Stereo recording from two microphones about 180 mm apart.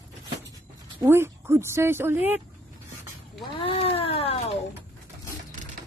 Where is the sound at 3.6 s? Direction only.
30° left (ahead or behind).